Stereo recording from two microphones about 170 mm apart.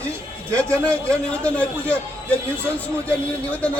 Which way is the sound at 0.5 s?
5° left (ahead or behind).